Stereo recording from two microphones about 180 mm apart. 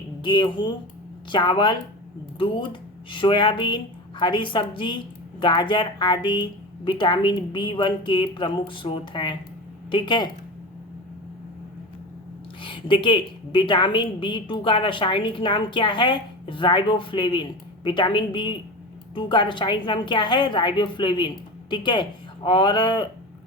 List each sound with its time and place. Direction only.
0.2 s a woman's voice: 25° left (ahead or behind)
3.1 s a woman's voice: 25° left (ahead or behind)
12.6 s a woman's voice: 25° left (ahead or behind)